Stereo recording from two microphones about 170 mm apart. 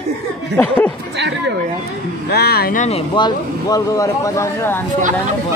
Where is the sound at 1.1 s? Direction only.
90° right.